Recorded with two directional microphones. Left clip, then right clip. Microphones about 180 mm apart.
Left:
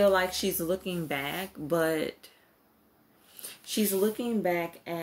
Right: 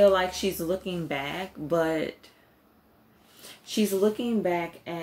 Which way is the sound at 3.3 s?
50° left (ahead or behind).